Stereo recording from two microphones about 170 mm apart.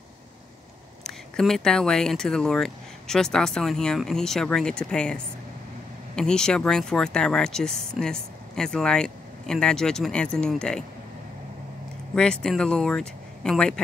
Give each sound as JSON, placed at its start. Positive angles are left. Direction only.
{"t": 1.0, "sound": "speech", "side_deg": 0}
{"t": 12.2, "sound": "speech", "side_deg": 5}